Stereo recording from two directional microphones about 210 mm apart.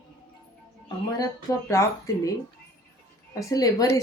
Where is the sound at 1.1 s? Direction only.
15° left (ahead or behind).